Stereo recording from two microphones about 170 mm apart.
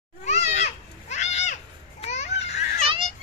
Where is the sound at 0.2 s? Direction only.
40° left (ahead or behind).